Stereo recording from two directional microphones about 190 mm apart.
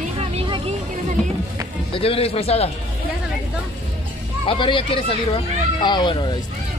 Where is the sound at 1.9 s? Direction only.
30° left (ahead or behind).